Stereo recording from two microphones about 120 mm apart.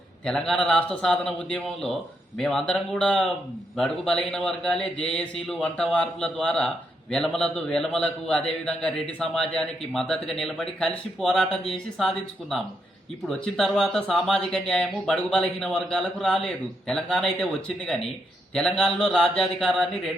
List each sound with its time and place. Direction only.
0.3 s a man's voice: 5° left (ahead or behind)